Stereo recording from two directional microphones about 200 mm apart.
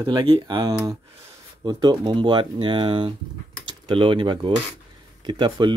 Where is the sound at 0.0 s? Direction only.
25° right (ahead or behind).